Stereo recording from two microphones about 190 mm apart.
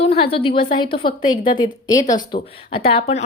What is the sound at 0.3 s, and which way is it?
A woman's voice, 30° left (ahead or behind).